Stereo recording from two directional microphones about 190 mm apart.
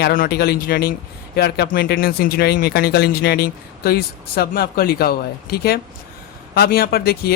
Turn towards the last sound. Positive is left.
turn(degrees=55)  # may be behind; listen again after turning